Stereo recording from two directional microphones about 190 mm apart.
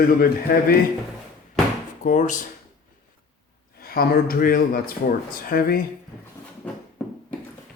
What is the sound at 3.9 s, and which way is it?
Speech, 50° left (ahead or behind).